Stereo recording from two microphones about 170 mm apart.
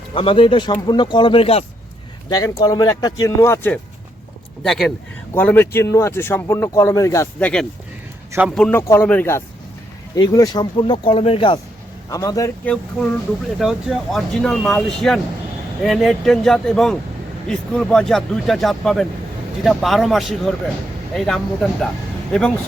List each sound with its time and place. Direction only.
0.1 s speech: 30° left (ahead or behind)
2.3 s speech: 20° left (ahead or behind)
4.6 s speech: centre (ahead or behind)
8.3 s a man's voice: 10° right (ahead or behind)
8.5 s speech: 5° left (ahead or behind)
10.2 s speech: 25° left (ahead or behind)
12.6 s speech: 5° left (ahead or behind)